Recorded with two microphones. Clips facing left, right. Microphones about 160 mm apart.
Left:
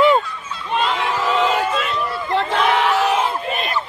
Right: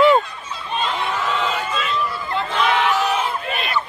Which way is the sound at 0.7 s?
90° left.